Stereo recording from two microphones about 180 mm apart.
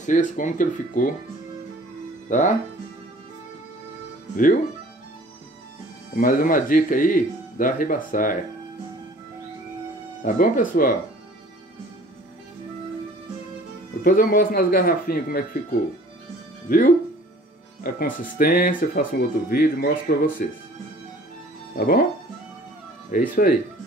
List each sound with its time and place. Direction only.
0.0 s speech: 45° left (ahead or behind)
2.2 s speech: 45° left (ahead or behind)
6.1 s speech: 50° left (ahead or behind)
10.2 s speech: 50° left (ahead or behind)
14.0 s speech: 55° left (ahead or behind)
16.6 s speech: 50° left (ahead or behind)
21.7 s speech: 55° left (ahead or behind)
23.1 s speech: 55° left (ahead or behind)